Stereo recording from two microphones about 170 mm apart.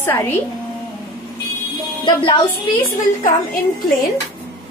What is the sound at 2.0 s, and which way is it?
Speech, 25° left (ahead or behind).